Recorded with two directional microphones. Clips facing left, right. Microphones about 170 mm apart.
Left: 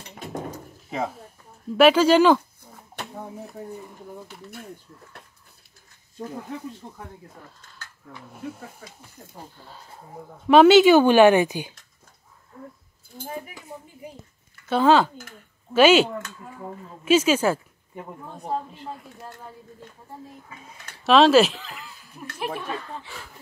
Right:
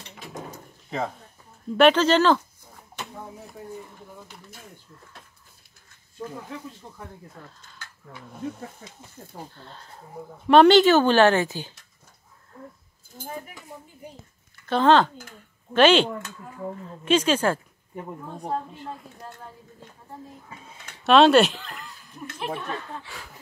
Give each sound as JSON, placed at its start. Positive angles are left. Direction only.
{"t": 0.8, "sound": "a woman's voice", "side_deg": 5}
{"t": 9.6, "sound": "a woman's voice", "side_deg": 10}
{"t": 14.7, "sound": "a woman's voice", "side_deg": 10}
{"t": 20.4, "sound": "speech", "side_deg": -25}
{"t": 21.0, "sound": "speech", "side_deg": 0}